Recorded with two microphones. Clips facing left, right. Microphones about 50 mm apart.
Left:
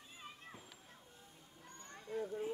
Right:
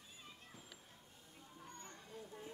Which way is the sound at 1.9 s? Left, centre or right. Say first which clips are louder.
Left 11 dB; left.